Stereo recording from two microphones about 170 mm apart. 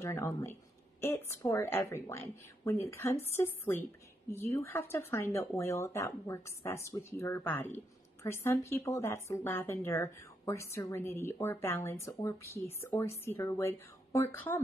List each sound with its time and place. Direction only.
0.0 s speech: 15° left (ahead or behind)